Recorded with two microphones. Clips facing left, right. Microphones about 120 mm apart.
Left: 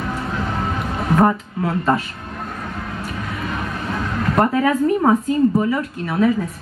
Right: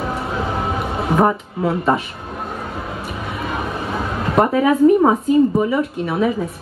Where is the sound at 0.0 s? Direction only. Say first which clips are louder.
Right 2 dB; 25° right (ahead or behind).